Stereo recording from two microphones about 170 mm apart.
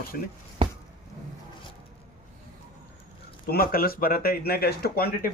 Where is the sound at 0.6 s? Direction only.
30° right (ahead or behind).